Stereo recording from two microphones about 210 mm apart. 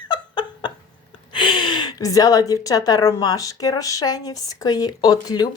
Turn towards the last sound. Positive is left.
turn(degrees=20)  # may be behind; listen again after turning